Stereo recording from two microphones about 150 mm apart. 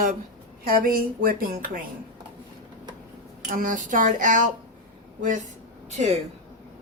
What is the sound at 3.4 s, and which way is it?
Speech, 65° right (ahead or behind).